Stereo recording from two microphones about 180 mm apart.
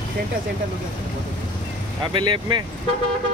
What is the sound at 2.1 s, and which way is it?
Speech, 25° right (ahead or behind).